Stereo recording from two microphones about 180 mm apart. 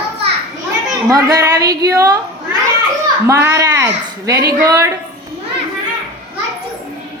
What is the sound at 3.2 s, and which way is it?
A woman's voice, 15° right (ahead or behind).